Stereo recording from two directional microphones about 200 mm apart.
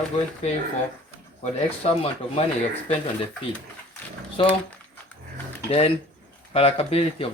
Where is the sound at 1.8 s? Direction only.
30° left (ahead or behind).